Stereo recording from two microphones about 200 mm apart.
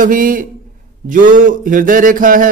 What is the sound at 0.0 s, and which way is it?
Speech, 45° right (ahead or behind).